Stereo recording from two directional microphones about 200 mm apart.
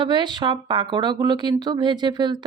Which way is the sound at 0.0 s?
20° right (ahead or behind).